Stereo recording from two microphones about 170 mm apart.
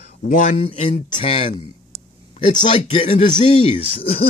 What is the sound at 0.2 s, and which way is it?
Speech, 55° left (ahead or behind).